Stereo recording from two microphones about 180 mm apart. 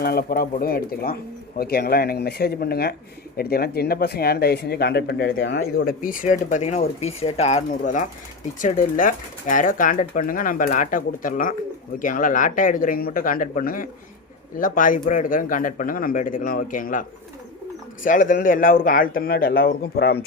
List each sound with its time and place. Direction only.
0.0 s speech: 60° left (ahead or behind)